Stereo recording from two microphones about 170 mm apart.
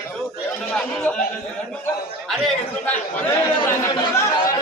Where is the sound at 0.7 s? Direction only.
10° left (ahead or behind).